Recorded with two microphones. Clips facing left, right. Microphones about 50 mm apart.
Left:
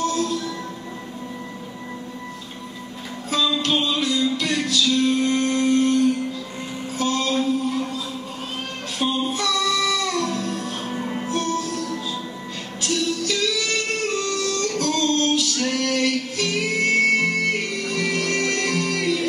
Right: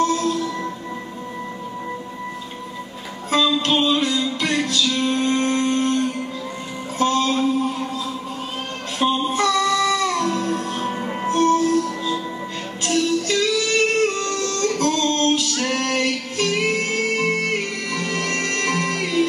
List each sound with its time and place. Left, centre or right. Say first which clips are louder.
0.0 s music: right 3 dB; right
3.3 s music: right 3 dB; right
9.0 s music: right 4 dB; right
11.2 s music: right 10 dB; right